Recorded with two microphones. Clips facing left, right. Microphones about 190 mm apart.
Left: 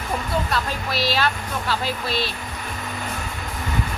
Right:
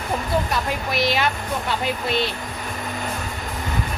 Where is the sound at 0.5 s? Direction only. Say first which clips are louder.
Right 1 dB; 20° right (ahead or behind).